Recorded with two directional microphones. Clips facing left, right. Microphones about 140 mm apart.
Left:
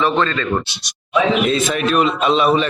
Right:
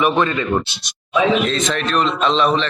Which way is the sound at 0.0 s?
15° right (ahead or behind).